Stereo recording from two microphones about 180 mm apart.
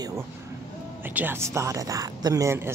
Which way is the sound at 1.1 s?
10° right (ahead or behind).